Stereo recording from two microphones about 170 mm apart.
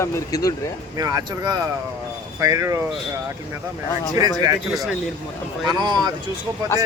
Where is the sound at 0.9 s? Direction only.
20° right (ahead or behind).